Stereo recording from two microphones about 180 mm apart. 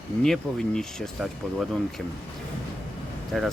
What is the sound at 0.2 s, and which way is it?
Speech, 5° left (ahead or behind).